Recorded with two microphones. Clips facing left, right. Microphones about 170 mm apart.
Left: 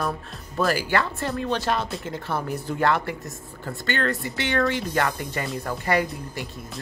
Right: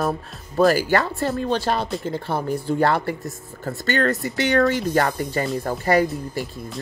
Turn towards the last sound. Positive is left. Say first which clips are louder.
# right 5 dB
turn(degrees=-40)  # may be behind; listen again after turning